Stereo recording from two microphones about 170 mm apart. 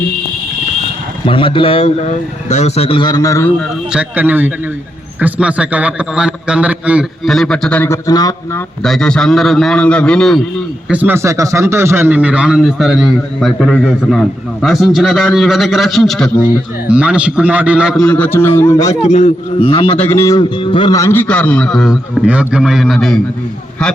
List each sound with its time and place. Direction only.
1.2 s speech: 30° left (ahead or behind)
3.9 s speech: 10° right (ahead or behind); by 8.6 s 20° left (ahead or behind)
8.8 s speech: 5° left (ahead or behind)
10.8 s speech: 10° right (ahead or behind); by 18.9 s 20° left (ahead or behind)
19.0 s speech: 40° left (ahead or behind)
20.1 s speech: 20° left (ahead or behind)
20.9 s speech: 15° left (ahead or behind)